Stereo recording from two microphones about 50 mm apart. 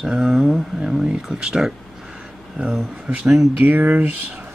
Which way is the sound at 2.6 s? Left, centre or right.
Right.